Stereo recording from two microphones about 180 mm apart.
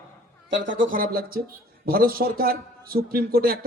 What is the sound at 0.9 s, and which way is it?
A man's voice, 55° right (ahead or behind).